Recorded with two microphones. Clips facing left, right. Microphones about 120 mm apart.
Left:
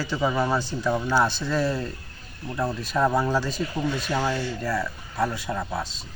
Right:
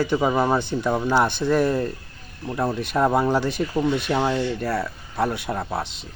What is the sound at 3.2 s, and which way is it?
Speech, 20° right (ahead or behind).